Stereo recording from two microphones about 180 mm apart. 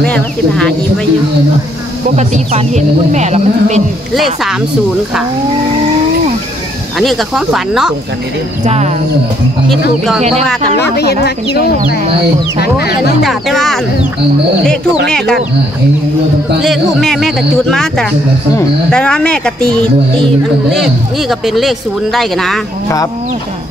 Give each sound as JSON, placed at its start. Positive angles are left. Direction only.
{"t": 0.0, "sound": "speech", "side_deg": 5}
{"t": 2.1, "sound": "speech", "side_deg": -40}
{"t": 4.1, "sound": "speech", "side_deg": 0}
{"t": 7.0, "sound": "speech", "side_deg": 0}
{"t": 8.6, "sound": "speech", "side_deg": -40}
{"t": 9.7, "sound": "speech", "side_deg": 0}
{"t": 12.5, "sound": "speech", "side_deg": 60}
{"t": 13.2, "sound": "speech", "side_deg": 0}
{"t": 15.0, "sound": "speech", "side_deg": 5}
{"t": 16.6, "sound": "speech", "side_deg": 0}